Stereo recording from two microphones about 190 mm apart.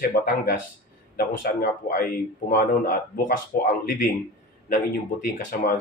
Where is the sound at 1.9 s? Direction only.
50° left (ahead or behind).